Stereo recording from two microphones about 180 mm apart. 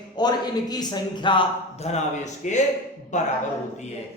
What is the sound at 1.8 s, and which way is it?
A man's voice, 40° left (ahead or behind).